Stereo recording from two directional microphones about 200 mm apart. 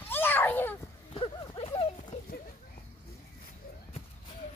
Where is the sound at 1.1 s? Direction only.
25° left (ahead or behind).